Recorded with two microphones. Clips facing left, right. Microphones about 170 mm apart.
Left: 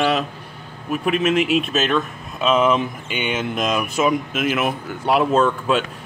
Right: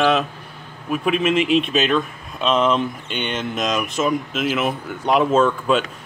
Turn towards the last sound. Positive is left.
turn(degrees=0)  # may be behind; listen again after turning